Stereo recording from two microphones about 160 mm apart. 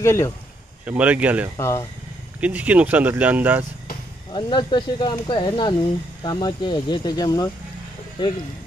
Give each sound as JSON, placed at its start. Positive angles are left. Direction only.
{"t": 0.0, "sound": "speech", "side_deg": 15}
{"t": 0.8, "sound": "speech", "side_deg": -10}
{"t": 1.6, "sound": "speech", "side_deg": 20}
{"t": 2.4, "sound": "speech", "side_deg": -10}
{"t": 4.3, "sound": "speech", "side_deg": 30}